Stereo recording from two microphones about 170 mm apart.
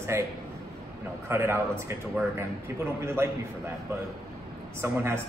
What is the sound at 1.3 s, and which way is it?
A man's voice, 15° right (ahead or behind).